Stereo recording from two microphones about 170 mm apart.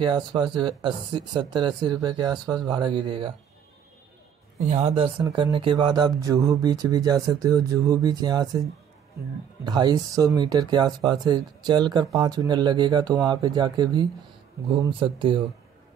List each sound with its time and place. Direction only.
0.0 s speech: 30° right (ahead or behind)
4.6 s speech: 40° right (ahead or behind); by 8.6 s 25° right (ahead or behind)
9.7 s speech: 25° right (ahead or behind)